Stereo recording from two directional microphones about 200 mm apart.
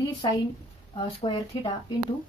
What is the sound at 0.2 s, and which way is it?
Speech, 20° left (ahead or behind).